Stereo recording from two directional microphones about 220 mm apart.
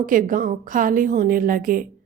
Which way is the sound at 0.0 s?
40° right (ahead or behind).